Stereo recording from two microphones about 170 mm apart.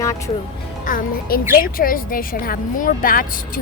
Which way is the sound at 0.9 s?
55° left (ahead or behind).